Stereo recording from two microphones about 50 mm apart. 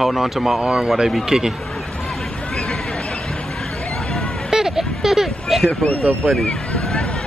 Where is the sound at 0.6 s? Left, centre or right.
Centre.